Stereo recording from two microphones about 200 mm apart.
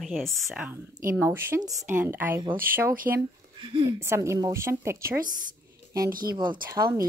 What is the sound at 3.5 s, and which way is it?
Speech, 25° right (ahead or behind).